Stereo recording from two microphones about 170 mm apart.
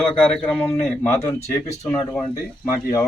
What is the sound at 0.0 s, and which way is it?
Speech, 5° left (ahead or behind).